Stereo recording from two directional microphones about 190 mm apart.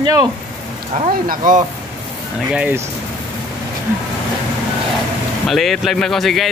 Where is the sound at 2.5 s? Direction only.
10° right (ahead or behind).